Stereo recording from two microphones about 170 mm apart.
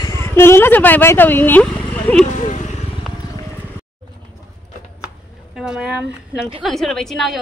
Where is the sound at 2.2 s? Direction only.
45° left (ahead or behind).